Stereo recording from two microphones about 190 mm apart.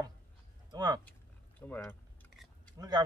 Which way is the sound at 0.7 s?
20° right (ahead or behind).